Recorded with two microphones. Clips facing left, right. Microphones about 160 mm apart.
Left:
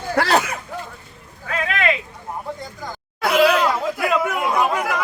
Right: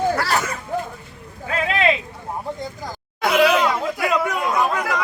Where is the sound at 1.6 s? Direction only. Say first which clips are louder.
Right 3 dB; 30° right (ahead or behind).